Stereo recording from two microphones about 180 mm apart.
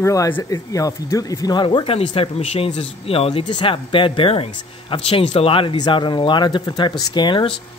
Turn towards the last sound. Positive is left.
turn(degrees=25)  # may be behind; listen again after turning